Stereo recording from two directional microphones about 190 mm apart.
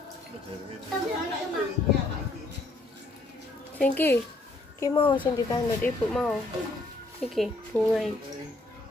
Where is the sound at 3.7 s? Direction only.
10° left (ahead or behind).